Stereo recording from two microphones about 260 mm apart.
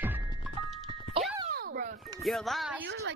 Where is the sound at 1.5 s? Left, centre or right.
Right.